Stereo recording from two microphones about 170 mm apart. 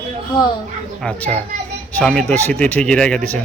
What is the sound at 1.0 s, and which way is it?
A child's voice, 5° left (ahead or behind).